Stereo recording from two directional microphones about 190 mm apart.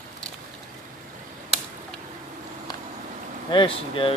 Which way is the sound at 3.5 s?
25° left (ahead or behind).